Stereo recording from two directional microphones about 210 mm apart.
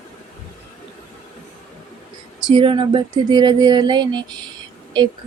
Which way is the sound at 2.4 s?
25° right (ahead or behind).